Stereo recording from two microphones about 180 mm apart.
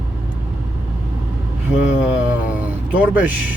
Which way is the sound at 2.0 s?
10° right (ahead or behind).